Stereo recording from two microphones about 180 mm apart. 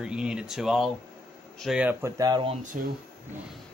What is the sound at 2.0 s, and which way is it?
Speech, 20° right (ahead or behind).